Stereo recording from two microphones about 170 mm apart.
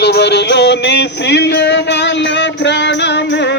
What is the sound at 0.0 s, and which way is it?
Music, 80° left.